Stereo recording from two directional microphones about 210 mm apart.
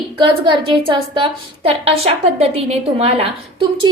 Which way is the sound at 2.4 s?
30° right (ahead or behind).